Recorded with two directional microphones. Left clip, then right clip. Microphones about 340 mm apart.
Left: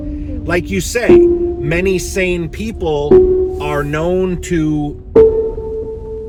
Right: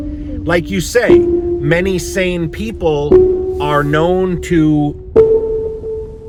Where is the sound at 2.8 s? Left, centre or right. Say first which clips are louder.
Even; centre.